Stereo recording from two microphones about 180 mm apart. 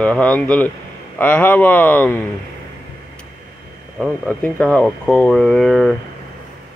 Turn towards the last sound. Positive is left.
turn(degrees=0)  # may be behind; listen again after turning